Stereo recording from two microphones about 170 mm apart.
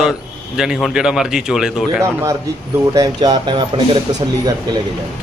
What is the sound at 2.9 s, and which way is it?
Speech, 20° right (ahead or behind).